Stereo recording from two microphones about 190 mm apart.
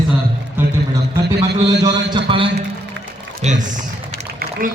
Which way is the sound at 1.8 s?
25° right (ahead or behind).